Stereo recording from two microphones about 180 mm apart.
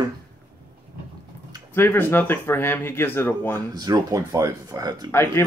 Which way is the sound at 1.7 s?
10° left (ahead or behind).